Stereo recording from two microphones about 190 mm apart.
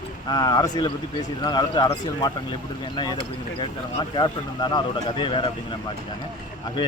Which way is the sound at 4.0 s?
25° left (ahead or behind).